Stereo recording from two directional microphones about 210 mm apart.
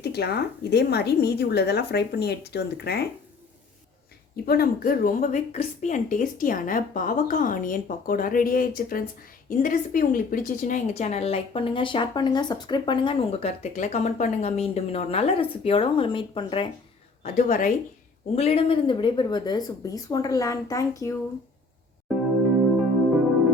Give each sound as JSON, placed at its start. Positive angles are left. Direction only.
{"t": 0.0, "sound": "a woman's voice", "side_deg": 50}
{"t": 4.4, "sound": "a woman's voice", "side_deg": 45}
{"t": 17.2, "sound": "a woman's voice", "side_deg": 35}